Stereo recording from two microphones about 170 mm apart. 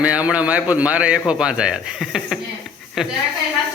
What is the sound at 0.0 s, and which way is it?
Speech, 5° right (ahead or behind).